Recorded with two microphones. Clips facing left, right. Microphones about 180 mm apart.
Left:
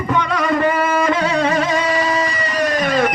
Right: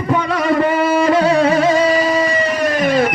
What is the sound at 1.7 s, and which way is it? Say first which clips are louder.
Music: right 4 dB; 25° right (ahead or behind).